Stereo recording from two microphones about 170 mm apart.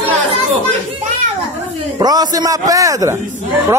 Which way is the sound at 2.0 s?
20° right (ahead or behind).